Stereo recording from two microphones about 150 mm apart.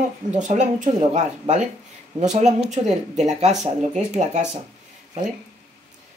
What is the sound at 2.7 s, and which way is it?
Speech, 50° right (ahead or behind).